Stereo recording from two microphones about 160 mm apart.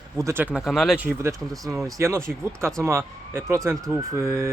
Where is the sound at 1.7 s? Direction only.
15° right (ahead or behind).